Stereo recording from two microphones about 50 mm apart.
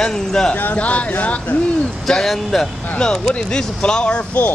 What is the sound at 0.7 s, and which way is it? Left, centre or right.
Speech, left.